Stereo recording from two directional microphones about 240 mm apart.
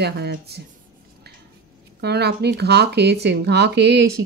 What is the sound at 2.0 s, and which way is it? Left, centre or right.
Speech, right.